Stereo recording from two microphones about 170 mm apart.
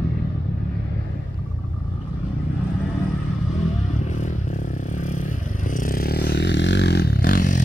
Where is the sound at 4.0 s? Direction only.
45° left (ahead or behind).